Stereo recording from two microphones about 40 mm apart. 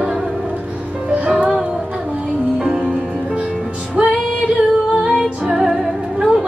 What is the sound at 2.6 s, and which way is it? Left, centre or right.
Music, centre.